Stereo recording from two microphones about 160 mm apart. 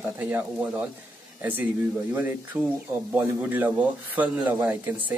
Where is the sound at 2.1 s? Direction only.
10° right (ahead or behind).